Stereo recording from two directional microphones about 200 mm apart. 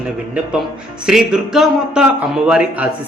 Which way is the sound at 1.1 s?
Centre (ahead or behind).